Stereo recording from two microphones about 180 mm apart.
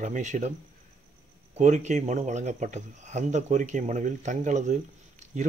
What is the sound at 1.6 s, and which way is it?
Speech, 40° right (ahead or behind).